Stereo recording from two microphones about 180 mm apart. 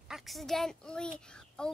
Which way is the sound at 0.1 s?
Centre (ahead or behind).